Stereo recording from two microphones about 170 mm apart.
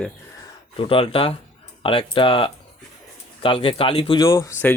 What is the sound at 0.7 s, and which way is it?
Speech, 30° left (ahead or behind).